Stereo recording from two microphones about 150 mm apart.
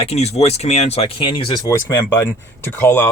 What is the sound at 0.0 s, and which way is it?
Speech, 45° left (ahead or behind).